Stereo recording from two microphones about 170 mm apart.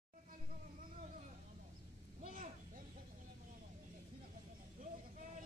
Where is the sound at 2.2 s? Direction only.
50° right (ahead or behind).